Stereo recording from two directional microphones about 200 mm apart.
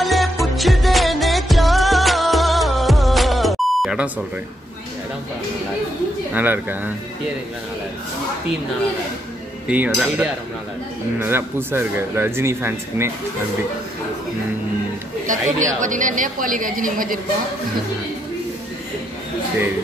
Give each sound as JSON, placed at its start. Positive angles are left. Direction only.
{"t": 0.0, "sound": "music", "side_deg": 0}
{"t": 6.3, "sound": "speech", "side_deg": -10}
{"t": 9.7, "sound": "a sound", "side_deg": -5}
{"t": 11.1, "sound": "speech", "side_deg": -10}
{"t": 15.2, "sound": "a woman's voice", "side_deg": -40}